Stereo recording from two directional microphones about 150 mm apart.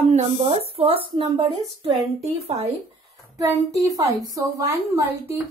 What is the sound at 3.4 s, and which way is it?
A woman's voice, 20° right (ahead or behind).